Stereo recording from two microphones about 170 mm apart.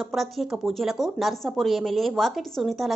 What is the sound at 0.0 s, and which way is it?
Speech, centre (ahead or behind).